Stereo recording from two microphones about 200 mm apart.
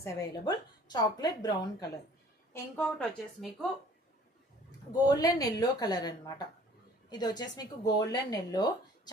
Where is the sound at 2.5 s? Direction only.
5° left (ahead or behind).